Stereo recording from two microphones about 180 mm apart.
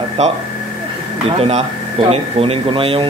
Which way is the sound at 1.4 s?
35° right (ahead or behind).